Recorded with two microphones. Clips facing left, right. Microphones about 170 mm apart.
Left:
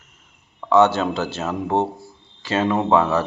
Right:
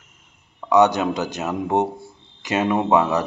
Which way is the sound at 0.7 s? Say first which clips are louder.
Even; 15° right (ahead or behind).